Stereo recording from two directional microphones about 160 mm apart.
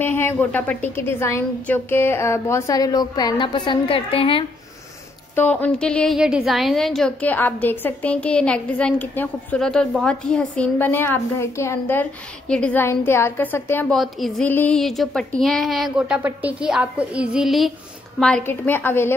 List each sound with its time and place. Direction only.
0.0 s a woman's voice: 15° left (ahead or behind); by 4.5 s 35° left (ahead or behind)
5.3 s a woman's voice: 10° left (ahead or behind)
13.9 s speech: centre (ahead or behind)
16.2 s a woman's voice: 10° right (ahead or behind)
18.2 s a woman's voice: 10° left (ahead or behind)